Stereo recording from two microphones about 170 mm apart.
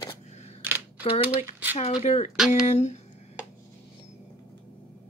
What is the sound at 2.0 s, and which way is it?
Speech, 40° left (ahead or behind).